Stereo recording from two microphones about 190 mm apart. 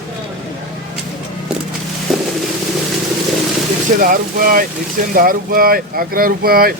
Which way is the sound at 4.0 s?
45° right (ahead or behind).